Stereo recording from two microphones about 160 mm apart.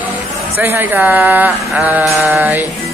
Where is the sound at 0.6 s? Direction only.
10° right (ahead or behind).